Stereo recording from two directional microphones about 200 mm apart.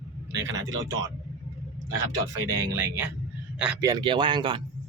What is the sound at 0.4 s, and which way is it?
Speech, 70° right (ahead or behind).